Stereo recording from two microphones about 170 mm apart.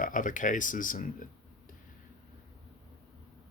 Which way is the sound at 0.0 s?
50° left (ahead or behind).